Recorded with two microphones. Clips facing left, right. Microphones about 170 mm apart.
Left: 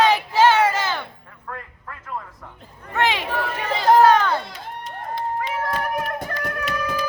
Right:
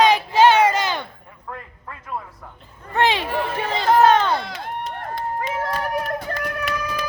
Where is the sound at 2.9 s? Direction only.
30° right (ahead or behind).